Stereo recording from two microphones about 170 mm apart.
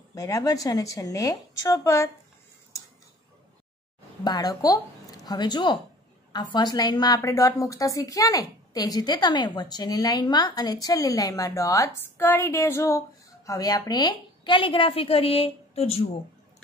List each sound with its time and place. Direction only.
0.1 s a woman's voice: 20° left (ahead or behind)
4.2 s a woman's voice: 25° left (ahead or behind)